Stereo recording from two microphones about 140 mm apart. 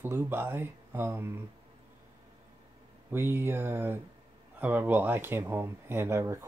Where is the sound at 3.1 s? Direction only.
15° right (ahead or behind).